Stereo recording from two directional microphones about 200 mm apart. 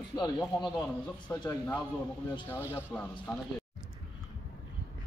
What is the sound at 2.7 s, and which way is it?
Speech, 5° left (ahead or behind).